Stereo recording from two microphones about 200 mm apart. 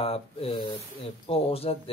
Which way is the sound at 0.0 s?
30° left (ahead or behind).